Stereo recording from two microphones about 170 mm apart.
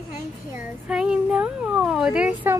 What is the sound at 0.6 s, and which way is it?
Speech, 5° right (ahead or behind).